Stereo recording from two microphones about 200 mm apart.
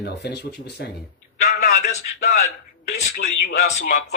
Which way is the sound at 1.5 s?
40° left (ahead or behind).